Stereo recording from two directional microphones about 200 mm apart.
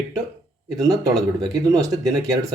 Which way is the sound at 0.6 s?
20° right (ahead or behind).